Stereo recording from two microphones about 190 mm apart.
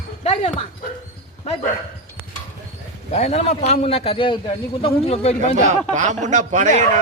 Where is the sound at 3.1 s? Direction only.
35° left (ahead or behind).